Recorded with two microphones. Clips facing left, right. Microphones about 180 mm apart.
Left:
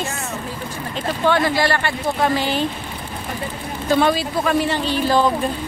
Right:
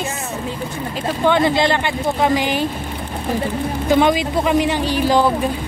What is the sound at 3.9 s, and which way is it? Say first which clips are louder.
Speech: right 2 dB; 15° right (ahead or behind).